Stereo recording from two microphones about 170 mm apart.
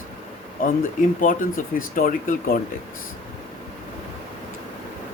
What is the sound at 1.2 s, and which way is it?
Speech, 55° left (ahead or behind).